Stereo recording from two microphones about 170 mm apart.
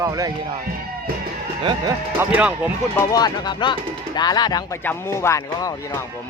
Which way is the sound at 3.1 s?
25° left (ahead or behind).